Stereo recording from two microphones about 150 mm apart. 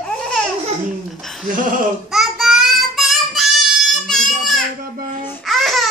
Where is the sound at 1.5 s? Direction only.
65° right (ahead or behind).